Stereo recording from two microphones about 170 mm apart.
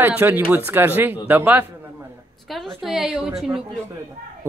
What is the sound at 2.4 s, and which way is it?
Speech, centre (ahead or behind).